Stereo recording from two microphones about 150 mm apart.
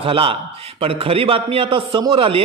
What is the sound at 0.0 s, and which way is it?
A man's voice, 35° right (ahead or behind).